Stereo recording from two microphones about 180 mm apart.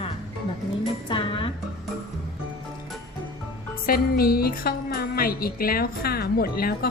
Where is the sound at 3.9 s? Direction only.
55° left (ahead or behind).